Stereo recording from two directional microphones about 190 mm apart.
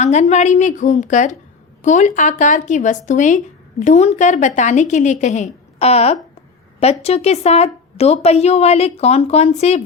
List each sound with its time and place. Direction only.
0.0 s a woman's voice: 35° left (ahead or behind)